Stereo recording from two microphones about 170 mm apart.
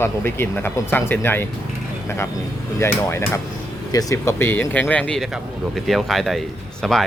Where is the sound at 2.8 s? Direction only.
15° left (ahead or behind).